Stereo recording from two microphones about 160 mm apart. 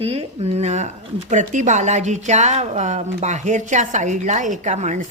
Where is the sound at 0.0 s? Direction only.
35° right (ahead or behind).